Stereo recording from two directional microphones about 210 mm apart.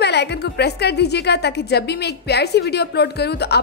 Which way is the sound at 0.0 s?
55° left (ahead or behind).